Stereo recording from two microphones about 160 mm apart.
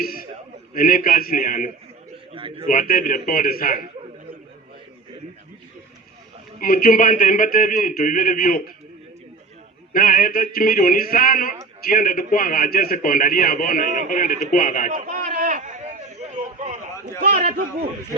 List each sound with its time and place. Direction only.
0.7 s a man's voice: 65° left (ahead or behind)
2.3 s a man's voice: 35° right (ahead or behind)
2.6 s a man's voice: 60° left (ahead or behind)
6.6 s a man's voice: 65° left (ahead or behind)
9.9 s a man's voice: 60° left (ahead or behind)
14.9 s a sound: 55° right (ahead or behind)
17.2 s a man's voice: 55° right (ahead or behind)